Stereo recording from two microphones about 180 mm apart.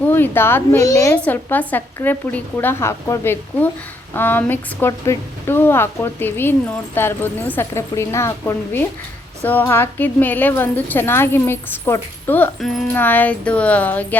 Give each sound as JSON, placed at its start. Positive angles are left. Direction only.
{"t": 0.1, "sound": "a woman's voice", "side_deg": 10}